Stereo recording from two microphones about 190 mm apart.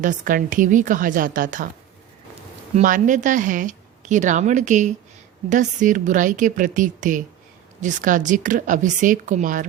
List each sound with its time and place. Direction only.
0.0 s a woman's voice: 45° right (ahead or behind)
2.7 s a woman's voice: 45° right (ahead or behind)